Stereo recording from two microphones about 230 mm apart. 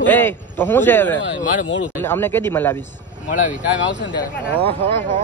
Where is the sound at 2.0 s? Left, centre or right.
Centre.